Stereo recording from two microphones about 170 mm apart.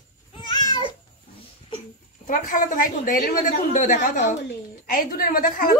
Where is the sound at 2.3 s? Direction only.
50° left (ahead or behind).